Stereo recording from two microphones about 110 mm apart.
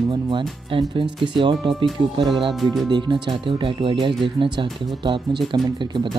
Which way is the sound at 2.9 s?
45° right (ahead or behind).